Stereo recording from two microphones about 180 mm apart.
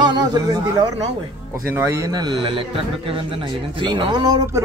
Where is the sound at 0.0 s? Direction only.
25° right (ahead or behind).